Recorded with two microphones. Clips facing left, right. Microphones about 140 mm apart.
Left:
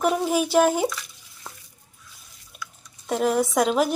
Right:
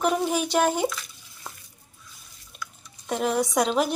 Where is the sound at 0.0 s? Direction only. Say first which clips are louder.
Left 2 dB; 5° left (ahead or behind).